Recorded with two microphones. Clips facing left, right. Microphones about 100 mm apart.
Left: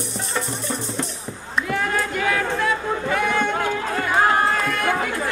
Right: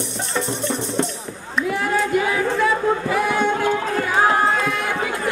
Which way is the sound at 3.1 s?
5° right (ahead or behind).